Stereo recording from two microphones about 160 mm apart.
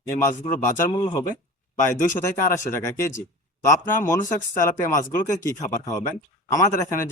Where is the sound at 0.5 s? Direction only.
15° left (ahead or behind).